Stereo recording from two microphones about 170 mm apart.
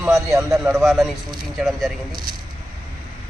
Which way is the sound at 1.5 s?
Centre (ahead or behind).